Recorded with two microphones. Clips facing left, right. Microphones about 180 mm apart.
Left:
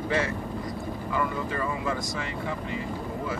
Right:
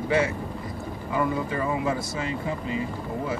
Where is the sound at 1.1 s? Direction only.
20° right (ahead or behind).